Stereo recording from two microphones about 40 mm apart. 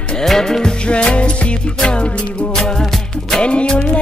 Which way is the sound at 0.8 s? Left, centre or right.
Left.